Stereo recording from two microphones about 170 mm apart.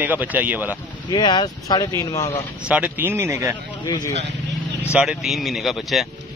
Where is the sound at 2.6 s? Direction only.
10° right (ahead or behind).